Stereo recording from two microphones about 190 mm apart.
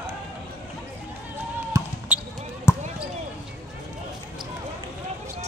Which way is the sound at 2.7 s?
15° left (ahead or behind).